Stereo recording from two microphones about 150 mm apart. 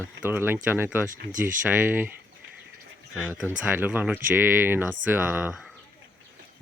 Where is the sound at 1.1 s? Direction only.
60° right (ahead or behind).